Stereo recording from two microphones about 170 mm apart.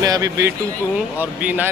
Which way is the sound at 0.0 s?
20° right (ahead or behind).